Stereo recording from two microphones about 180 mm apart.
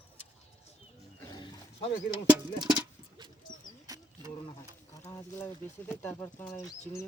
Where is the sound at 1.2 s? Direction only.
25° left (ahead or behind).